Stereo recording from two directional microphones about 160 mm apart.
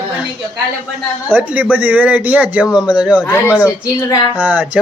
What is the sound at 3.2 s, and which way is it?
Speech, 15° left (ahead or behind).